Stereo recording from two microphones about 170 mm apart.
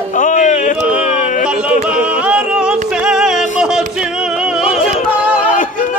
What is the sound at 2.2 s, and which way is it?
Music, 5° right (ahead or behind).